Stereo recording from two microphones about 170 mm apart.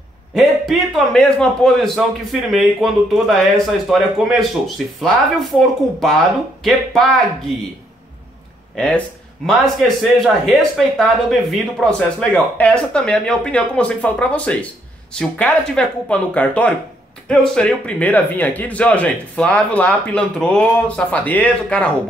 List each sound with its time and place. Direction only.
0.3 s a man's voice: centre (ahead or behind)
8.7 s a man's voice: 5° left (ahead or behind)